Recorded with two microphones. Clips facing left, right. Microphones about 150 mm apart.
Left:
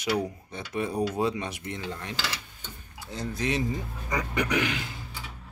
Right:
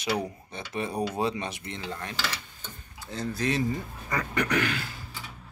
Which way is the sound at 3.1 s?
15° left (ahead or behind).